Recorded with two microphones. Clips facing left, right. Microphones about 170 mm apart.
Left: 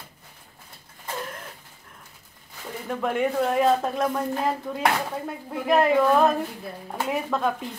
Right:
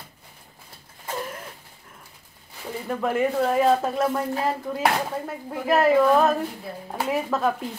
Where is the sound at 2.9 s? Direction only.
Centre (ahead or behind).